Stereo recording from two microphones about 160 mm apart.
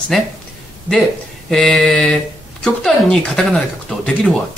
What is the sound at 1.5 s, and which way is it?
Speech, 5° left (ahead or behind).